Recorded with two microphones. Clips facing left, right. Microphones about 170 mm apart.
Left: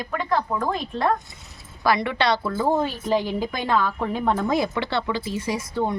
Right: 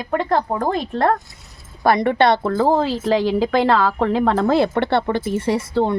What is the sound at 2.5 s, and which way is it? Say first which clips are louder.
A woman's voice: right 5 dB; 80° right.